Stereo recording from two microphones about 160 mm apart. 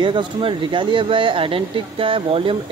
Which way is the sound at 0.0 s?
30° right (ahead or behind).